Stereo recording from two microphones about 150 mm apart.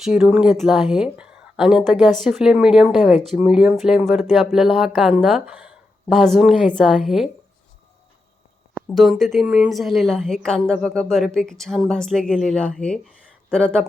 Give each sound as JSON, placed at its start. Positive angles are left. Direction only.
{"t": 0.0, "sound": "a woman's voice", "side_deg": -5}
{"t": 9.0, "sound": "a woman's voice", "side_deg": 0}